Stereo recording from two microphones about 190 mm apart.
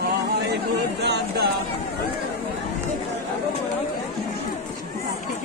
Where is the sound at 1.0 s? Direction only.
60° right (ahead or behind).